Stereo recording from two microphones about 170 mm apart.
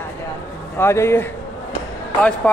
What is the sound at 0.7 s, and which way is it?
Speech, 15° left (ahead or behind).